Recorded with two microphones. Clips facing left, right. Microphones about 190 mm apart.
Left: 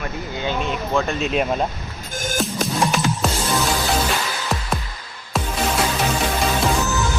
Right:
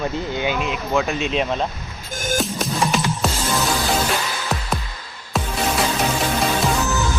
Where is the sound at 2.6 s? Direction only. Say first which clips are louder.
Left 1 dB; centre (ahead or behind).